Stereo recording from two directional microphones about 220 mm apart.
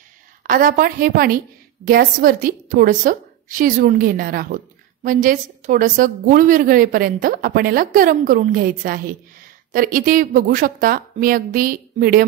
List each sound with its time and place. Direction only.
0.5 s a woman's voice: 40° right (ahead or behind)